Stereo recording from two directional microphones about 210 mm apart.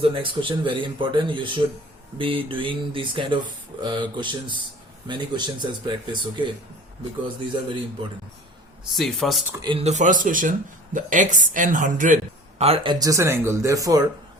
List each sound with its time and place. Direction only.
0.0 s speech: 25° right (ahead or behind)
8.9 s speech: centre (ahead or behind)
9.6 s speech: 25° right (ahead or behind)